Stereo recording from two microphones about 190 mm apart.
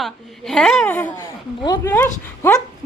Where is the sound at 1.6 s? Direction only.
20° left (ahead or behind).